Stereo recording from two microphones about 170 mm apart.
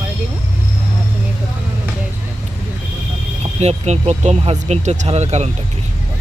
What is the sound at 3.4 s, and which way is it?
Speech, 40° right (ahead or behind).